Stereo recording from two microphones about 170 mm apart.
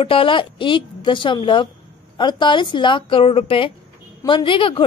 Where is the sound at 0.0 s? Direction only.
30° left (ahead or behind).